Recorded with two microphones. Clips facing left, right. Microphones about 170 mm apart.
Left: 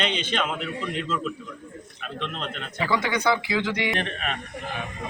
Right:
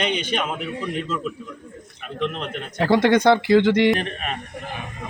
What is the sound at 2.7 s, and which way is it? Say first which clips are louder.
Speech: right 9 dB; 65° right (ahead or behind).